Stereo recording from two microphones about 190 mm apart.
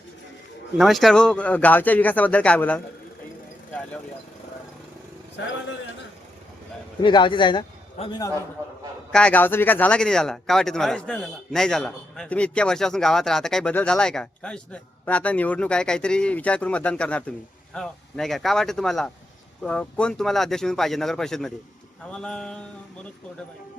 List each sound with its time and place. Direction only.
0.8 s speech: centre (ahead or behind)
7.0 s a man's voice: 25° left (ahead or behind)
9.1 s speech: 5° left (ahead or behind)